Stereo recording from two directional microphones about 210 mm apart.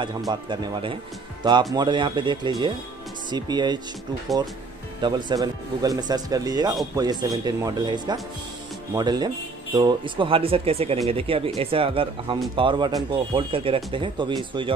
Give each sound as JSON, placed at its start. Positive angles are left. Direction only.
{"t": 0.3, "sound": "speech", "side_deg": -20}
{"t": 5.0, "sound": "speech", "side_deg": -20}